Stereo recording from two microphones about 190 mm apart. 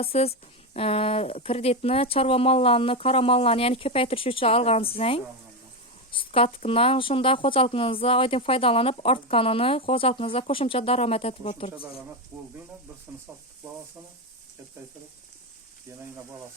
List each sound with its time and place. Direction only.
0.0 s a woman's voice: 30° left (ahead or behind)